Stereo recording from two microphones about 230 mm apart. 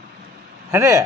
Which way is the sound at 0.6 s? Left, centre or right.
Centre.